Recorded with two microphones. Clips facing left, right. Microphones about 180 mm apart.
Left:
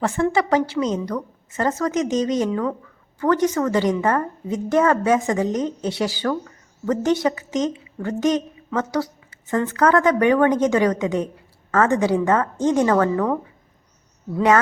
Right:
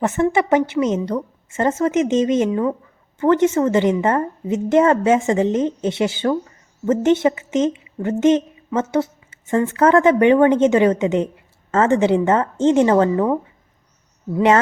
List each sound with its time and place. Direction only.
0.0 s a woman's voice: 20° right (ahead or behind)